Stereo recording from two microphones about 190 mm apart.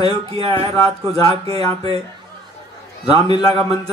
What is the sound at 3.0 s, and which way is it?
Speech, 30° right (ahead or behind).